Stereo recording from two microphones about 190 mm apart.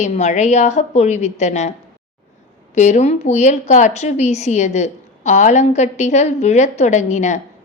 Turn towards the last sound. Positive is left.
turn(degrees=40)  # may be behind; listen again after turning